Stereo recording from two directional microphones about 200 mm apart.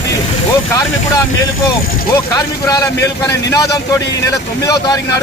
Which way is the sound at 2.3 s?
20° left (ahead or behind).